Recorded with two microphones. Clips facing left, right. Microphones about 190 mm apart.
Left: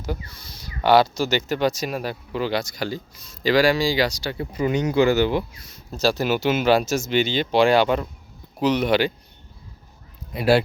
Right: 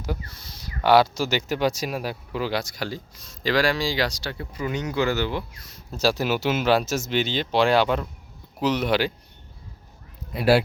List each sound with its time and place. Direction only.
0.0 s speech: centre (ahead or behind)
4.4 s speech: 15° left (ahead or behind)
5.9 s speech: 5° right (ahead or behind)